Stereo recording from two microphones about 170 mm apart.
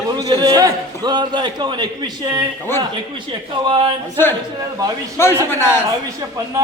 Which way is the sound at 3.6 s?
25° right (ahead or behind).